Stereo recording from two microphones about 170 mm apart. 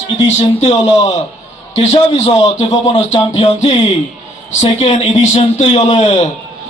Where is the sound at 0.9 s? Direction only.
20° left (ahead or behind).